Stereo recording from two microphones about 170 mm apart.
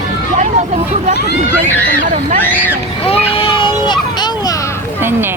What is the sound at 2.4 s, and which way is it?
Speech, 10° left (ahead or behind).